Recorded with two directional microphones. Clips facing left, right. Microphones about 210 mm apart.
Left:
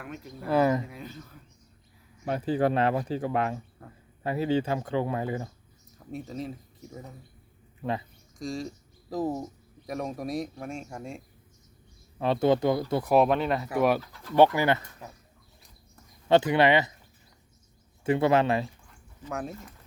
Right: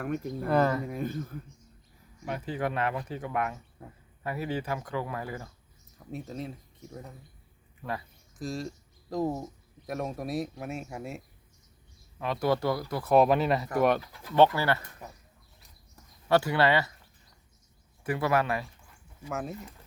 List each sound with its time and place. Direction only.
0.0 s speech: 50° right (ahead or behind)
0.4 s speech: 5° left (ahead or behind)
0.9 s speech: 50° right (ahead or behind)
2.2 s speech: 35° left (ahead or behind)
3.8 s speech: 10° right (ahead or behind)
4.2 s speech: 25° left (ahead or behind)
6.1 s speech: centre (ahead or behind)
7.8 s speech: 25° left (ahead or behind)
8.4 s speech: centre (ahead or behind)
12.2 s speech: 25° left (ahead or behind)
13.1 s speech: 5° right (ahead or behind); by 14.8 s 15° left (ahead or behind)
16.3 s speech: 20° left (ahead or behind)
18.0 s speech: 25° left (ahead or behind)
19.2 s speech: centre (ahead or behind)